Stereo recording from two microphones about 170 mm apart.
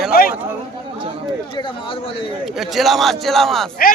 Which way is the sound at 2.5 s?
Centre (ahead or behind).